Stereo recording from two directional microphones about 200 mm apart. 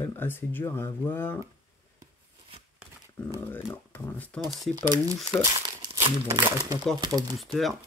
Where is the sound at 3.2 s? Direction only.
10° left (ahead or behind).